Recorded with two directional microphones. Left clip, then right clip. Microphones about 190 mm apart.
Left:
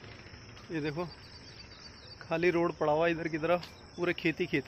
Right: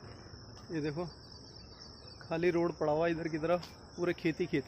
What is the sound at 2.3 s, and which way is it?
Speech, 15° left (ahead or behind).